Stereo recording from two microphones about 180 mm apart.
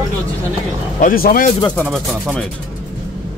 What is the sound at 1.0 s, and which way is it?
Speech, 55° left (ahead or behind).